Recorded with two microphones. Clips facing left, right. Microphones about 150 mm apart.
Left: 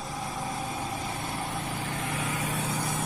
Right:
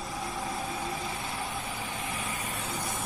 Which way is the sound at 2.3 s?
85° left.